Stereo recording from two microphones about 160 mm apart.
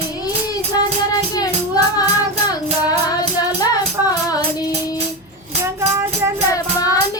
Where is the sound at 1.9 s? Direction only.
25° left (ahead or behind).